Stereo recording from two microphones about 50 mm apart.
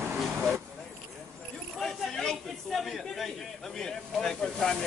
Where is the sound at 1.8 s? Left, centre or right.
Centre.